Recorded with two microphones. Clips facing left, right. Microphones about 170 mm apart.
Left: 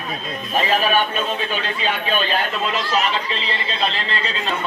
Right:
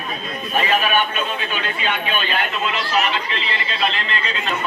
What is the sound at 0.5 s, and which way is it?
Speech, 35° left (ahead or behind).